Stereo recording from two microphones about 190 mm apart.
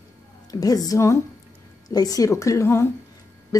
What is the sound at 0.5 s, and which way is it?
A woman's voice, 20° left (ahead or behind).